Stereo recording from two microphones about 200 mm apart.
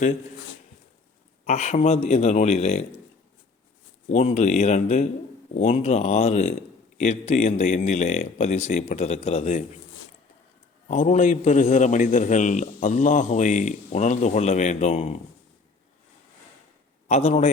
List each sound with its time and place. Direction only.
1.5 s a man's voice: 35° left (ahead or behind)
4.1 s a man's voice: 35° left (ahead or behind)
10.8 s a man's voice: 35° left (ahead or behind)
17.1 s a man's voice: 30° left (ahead or behind)